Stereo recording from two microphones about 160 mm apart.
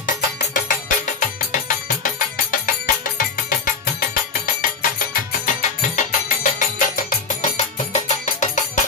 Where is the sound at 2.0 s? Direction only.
55° left (ahead or behind).